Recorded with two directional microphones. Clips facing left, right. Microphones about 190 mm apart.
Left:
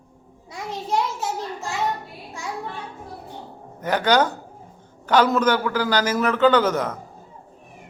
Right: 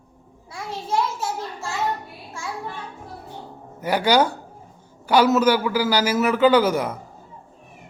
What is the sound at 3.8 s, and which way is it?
A man's voice, 10° right (ahead or behind).